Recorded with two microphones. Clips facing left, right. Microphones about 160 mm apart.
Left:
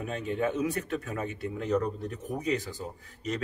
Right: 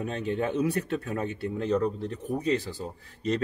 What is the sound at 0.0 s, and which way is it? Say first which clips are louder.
Speech: right 1 dB; 30° right (ahead or behind).